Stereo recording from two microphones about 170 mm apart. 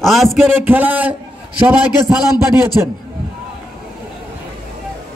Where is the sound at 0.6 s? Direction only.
10° right (ahead or behind).